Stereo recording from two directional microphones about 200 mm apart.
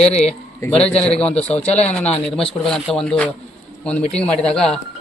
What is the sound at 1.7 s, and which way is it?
Speech, 35° left (ahead or behind).